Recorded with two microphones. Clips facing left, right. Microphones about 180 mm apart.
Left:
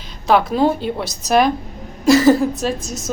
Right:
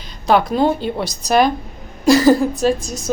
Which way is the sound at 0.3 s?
Centre (ahead or behind).